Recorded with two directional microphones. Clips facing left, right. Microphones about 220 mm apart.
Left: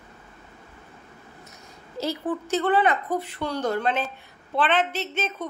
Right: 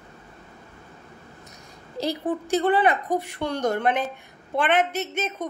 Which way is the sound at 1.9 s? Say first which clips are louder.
Right 1 dB; 15° right (ahead or behind).